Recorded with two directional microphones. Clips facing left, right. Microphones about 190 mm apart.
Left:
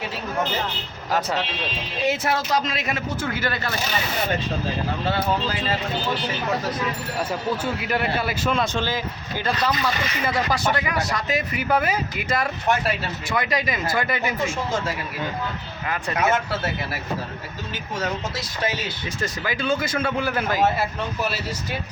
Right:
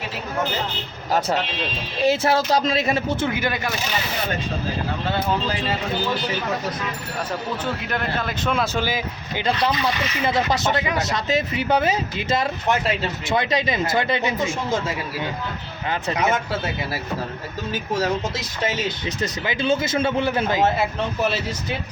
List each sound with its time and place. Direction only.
2.0 s speech: 30° right (ahead or behind); by 3.8 s 15° right (ahead or behind)
7.6 s speech: 10° left (ahead or behind)
8.5 s speech: 5° right (ahead or behind)
15.9 s speech: 20° right (ahead or behind)
18.3 s speech: 20° right (ahead or behind)